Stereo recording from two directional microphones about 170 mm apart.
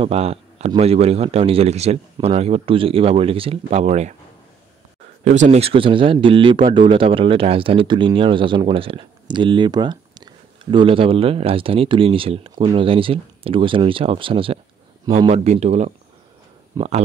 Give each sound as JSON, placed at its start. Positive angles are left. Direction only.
{"t": 0.0, "sound": "speech", "side_deg": -35}
{"t": 5.2, "sound": "speech", "side_deg": -45}
{"t": 16.8, "sound": "speech", "side_deg": -20}